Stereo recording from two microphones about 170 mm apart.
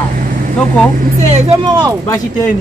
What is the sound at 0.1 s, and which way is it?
Vehicle, 50° right (ahead or behind).